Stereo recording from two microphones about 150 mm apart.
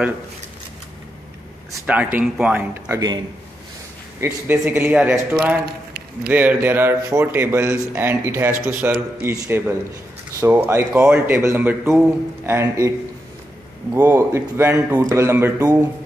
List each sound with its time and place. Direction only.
1.7 s a man's voice: 10° right (ahead or behind)
4.2 s a man's voice: 10° right (ahead or behind)
13.9 s a man's voice: 15° right (ahead or behind)